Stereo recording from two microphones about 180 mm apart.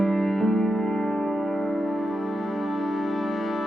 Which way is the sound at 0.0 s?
Centre (ahead or behind).